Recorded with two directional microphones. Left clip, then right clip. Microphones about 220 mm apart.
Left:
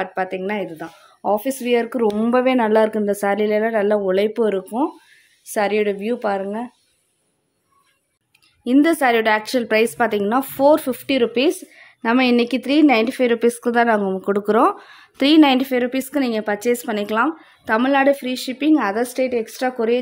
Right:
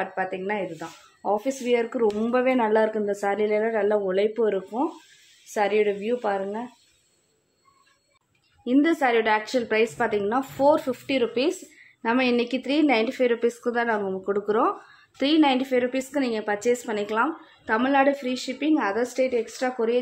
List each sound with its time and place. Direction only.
0.0 s a woman's voice: 50° left (ahead or behind)
8.6 s a woman's voice: 50° left (ahead or behind)